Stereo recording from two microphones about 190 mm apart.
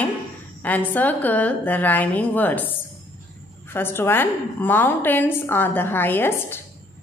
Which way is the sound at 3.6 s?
10° left (ahead or behind).